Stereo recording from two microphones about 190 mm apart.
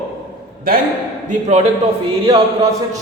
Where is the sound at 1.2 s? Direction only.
40° right (ahead or behind).